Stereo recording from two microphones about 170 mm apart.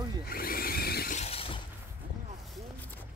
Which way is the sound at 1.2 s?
35° left (ahead or behind).